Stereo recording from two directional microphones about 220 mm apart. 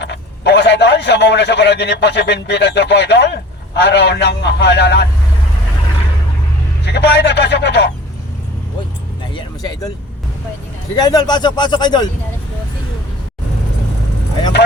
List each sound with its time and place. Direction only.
0.0 s a man's voice: 50° left (ahead or behind)
6.8 s a man's voice: 50° left (ahead or behind)
9.3 s vehicle: 15° left (ahead or behind)
10.9 s speech: 15° left (ahead or behind)